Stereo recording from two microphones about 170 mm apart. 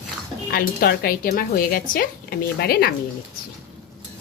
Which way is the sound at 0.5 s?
60° left (ahead or behind).